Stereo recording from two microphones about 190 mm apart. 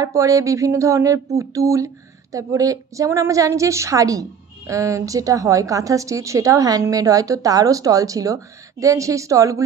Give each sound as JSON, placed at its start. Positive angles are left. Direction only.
{"t": 0.0, "sound": "a woman's voice", "side_deg": -15}